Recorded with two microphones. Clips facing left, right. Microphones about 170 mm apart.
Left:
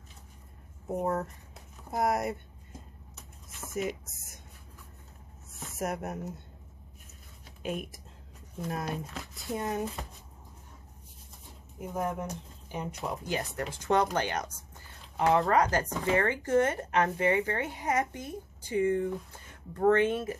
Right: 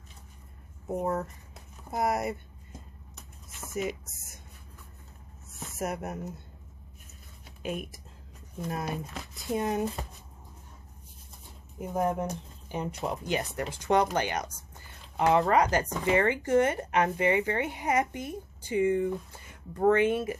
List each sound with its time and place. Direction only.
0.8 s speech: centre (ahead or behind)
3.7 s speech: centre (ahead or behind)
5.8 s speech: centre (ahead or behind)
7.6 s speech: centre (ahead or behind)
9.5 s speech: 20° right (ahead or behind)
11.9 s speech: 30° right (ahead or behind); by 20.3 s 10° right (ahead or behind)